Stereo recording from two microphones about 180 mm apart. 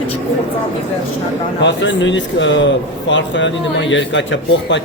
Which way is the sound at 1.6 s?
90° left.